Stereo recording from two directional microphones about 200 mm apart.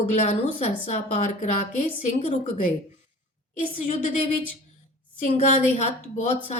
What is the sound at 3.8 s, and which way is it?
Speech, 35° left (ahead or behind).